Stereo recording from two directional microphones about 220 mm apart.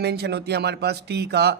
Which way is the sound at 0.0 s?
50° right (ahead or behind).